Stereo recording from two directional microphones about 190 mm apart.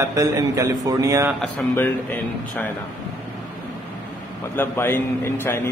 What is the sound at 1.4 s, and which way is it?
Speech, 5° left (ahead or behind).